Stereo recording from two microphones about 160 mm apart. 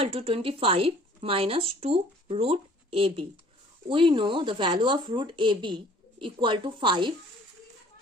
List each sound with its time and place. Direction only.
0.0 s speech: 35° right (ahead or behind)